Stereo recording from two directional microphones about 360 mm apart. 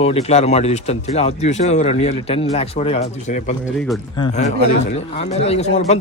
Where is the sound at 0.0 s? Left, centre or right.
Centre.